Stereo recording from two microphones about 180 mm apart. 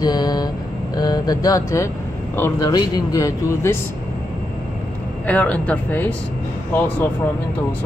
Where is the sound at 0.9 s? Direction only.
20° left (ahead or behind).